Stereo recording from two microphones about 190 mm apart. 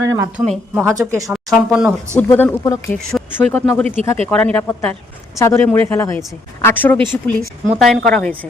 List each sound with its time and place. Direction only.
0.0 s speech: 15° right (ahead or behind)
0.3 s speech: centre (ahead or behind)
0.8 s speech: 15° right (ahead or behind)
1.3 s speech: centre (ahead or behind)
2.1 s speech: 10° left (ahead or behind)